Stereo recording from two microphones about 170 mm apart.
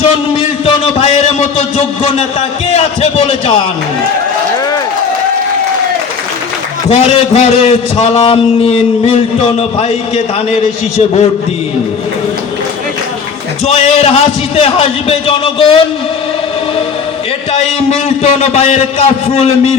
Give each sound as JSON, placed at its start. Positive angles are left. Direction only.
{"t": 0.0, "sound": "a sound", "side_deg": 35}
{"t": 2.7, "sound": "a man's voice", "side_deg": 35}
{"t": 6.8, "sound": "a man's voice", "side_deg": 35}
{"t": 13.7, "sound": "a man's voice", "side_deg": 35}
{"t": 17.5, "sound": "a man's voice", "side_deg": 40}